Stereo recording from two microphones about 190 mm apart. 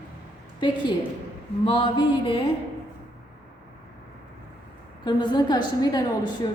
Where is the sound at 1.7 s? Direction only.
25° left (ahead or behind).